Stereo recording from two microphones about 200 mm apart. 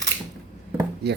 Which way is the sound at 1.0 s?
55° right (ahead or behind).